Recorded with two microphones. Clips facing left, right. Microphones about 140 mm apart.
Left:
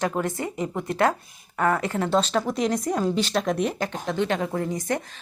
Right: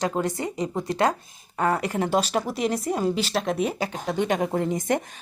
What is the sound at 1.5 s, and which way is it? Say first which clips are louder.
Speech: left 1 dB; 30° right (ahead or behind).